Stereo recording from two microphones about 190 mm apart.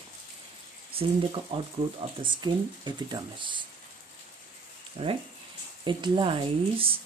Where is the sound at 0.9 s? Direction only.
30° right (ahead or behind).